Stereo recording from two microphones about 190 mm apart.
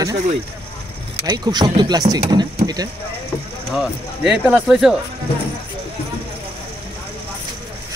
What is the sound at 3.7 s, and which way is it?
Speech, 5° right (ahead or behind).